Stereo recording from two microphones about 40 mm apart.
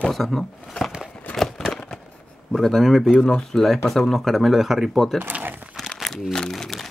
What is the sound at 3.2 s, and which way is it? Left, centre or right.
Speech, centre.